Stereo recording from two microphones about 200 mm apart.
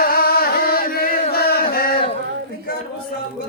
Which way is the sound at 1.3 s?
50° left (ahead or behind).